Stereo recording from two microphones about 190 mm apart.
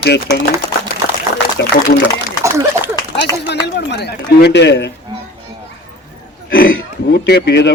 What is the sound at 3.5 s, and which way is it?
A man's voice, 60° left (ahead or behind).